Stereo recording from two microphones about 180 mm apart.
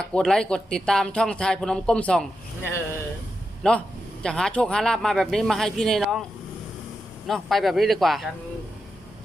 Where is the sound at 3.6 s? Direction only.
5° left (ahead or behind).